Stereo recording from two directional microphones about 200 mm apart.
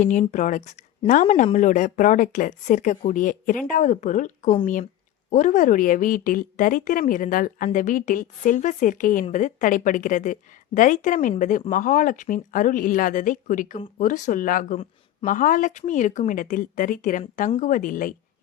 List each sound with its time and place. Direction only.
0.0 s a woman's voice: 35° left (ahead or behind)